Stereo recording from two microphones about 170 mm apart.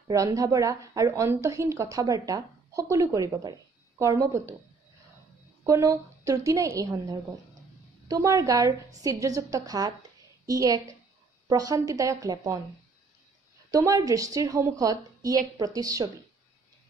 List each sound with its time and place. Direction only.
0.1 s a woman's voice: 20° right (ahead or behind)
5.6 s a woman's voice: 20° right (ahead or behind)
13.7 s a woman's voice: 20° right (ahead or behind)